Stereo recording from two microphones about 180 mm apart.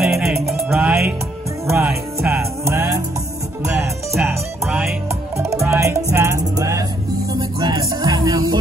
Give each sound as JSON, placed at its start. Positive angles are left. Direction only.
{"t": 0.0, "sound": "music", "side_deg": 0}
{"t": 4.1, "sound": "music", "side_deg": -5}
{"t": 5.4, "sound": "music", "side_deg": -15}